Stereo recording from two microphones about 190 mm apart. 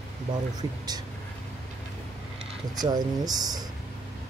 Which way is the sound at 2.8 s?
20° right (ahead or behind).